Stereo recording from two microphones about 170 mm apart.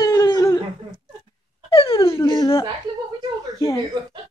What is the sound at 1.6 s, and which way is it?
Wail, 35° left (ahead or behind).